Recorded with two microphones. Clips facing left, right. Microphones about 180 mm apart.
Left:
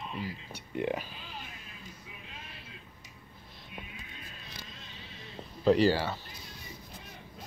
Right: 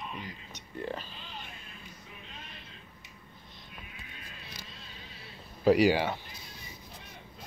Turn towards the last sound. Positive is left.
turn(degrees=-15)  # may be behind; listen again after turning